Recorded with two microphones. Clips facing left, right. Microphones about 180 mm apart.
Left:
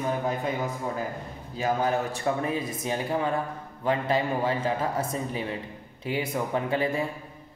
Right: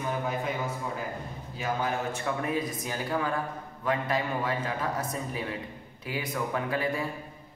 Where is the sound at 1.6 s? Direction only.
35° left (ahead or behind).